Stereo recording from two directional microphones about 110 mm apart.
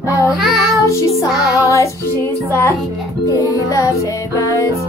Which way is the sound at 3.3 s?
30° left (ahead or behind).